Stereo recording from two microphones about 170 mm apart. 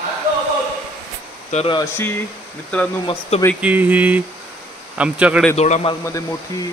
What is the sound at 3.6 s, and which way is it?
Speech, 10° right (ahead or behind).